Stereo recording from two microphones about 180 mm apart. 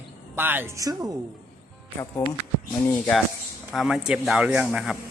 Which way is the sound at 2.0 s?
15° left (ahead or behind).